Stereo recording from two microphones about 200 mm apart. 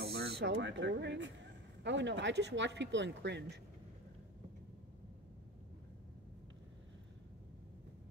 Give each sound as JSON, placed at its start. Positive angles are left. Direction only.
{"t": 0.0, "sound": "speech", "side_deg": -55}